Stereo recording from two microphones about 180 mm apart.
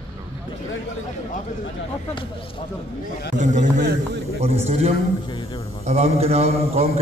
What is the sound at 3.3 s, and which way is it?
Speech, 40° right (ahead or behind).